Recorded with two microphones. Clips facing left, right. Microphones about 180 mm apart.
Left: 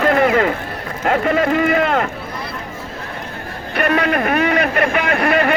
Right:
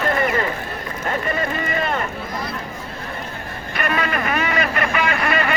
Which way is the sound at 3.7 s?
60° left (ahead or behind).